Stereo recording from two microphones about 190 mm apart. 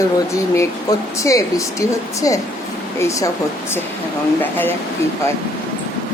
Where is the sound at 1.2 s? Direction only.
15° left (ahead or behind).